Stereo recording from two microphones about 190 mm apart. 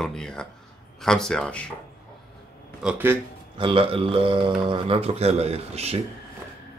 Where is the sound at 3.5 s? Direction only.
25° right (ahead or behind).